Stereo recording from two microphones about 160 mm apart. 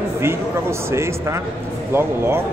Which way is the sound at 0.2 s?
15° right (ahead or behind).